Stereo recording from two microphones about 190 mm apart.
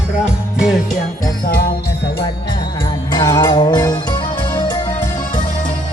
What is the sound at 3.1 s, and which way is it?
Music, 20° left (ahead or behind).